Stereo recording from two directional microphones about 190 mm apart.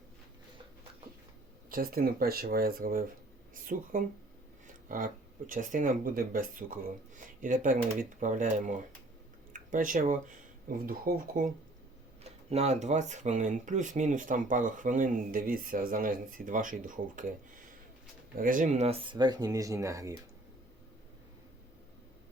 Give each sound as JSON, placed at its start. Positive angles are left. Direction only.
{"t": 1.7, "sound": "speech", "side_deg": -50}
{"t": 12.2, "sound": "speech", "side_deg": -35}